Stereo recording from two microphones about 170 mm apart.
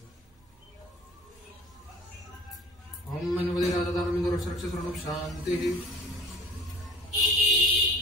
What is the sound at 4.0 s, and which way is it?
Speech, centre (ahead or behind).